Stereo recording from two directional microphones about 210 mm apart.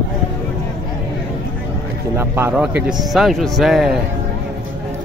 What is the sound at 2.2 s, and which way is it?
Speech, 10° right (ahead or behind).